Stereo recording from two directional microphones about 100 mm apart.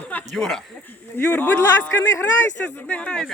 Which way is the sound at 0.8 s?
20° left (ahead or behind).